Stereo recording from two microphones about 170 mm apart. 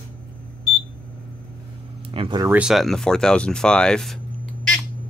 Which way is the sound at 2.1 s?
30° right (ahead or behind).